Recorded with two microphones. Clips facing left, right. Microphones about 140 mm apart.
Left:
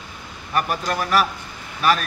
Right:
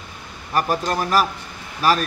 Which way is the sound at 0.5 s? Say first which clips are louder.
Right 2 dB; 35° right (ahead or behind).